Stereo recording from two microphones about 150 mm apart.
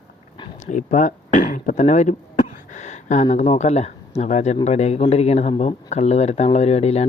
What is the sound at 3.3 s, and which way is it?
Speech, 45° left (ahead or behind).